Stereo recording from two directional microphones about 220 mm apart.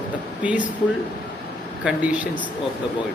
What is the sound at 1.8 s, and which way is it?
Speech, 5° right (ahead or behind).